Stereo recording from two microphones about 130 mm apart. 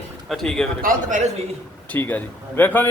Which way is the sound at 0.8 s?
80° right.